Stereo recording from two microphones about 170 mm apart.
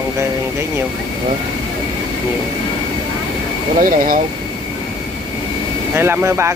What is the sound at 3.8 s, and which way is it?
Speech, 50° right (ahead or behind).